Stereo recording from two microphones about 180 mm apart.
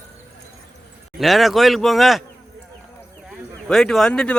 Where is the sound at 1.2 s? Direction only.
Centre (ahead or behind).